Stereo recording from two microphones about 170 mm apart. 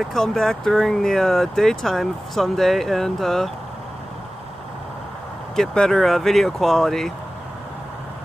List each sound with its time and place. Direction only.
0.1 s speech: centre (ahead or behind)
5.6 s speech: centre (ahead or behind)